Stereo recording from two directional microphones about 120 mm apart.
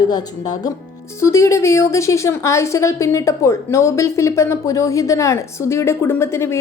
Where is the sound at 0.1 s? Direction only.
35° left (ahead or behind).